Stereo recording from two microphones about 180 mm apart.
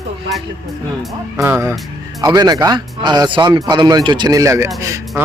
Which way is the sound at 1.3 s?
15° right (ahead or behind).